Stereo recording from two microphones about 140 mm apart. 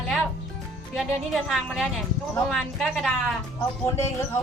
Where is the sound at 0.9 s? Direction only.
Centre (ahead or behind).